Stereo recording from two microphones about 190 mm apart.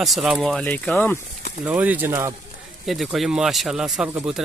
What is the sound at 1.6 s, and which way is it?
Speech, 10° right (ahead or behind).